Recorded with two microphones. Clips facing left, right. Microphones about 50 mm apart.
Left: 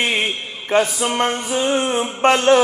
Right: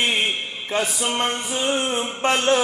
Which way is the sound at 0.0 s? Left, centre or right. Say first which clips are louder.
Left 2 dB; left.